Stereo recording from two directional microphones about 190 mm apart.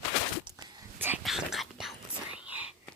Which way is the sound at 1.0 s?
5° right (ahead or behind).